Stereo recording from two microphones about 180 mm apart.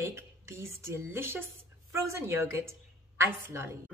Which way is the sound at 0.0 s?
15° right (ahead or behind).